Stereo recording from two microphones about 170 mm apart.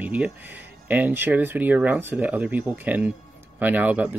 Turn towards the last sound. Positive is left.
turn(degrees=-10)  # may be behind; listen again after turning